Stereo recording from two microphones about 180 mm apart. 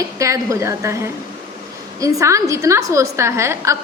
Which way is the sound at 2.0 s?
15° right (ahead or behind).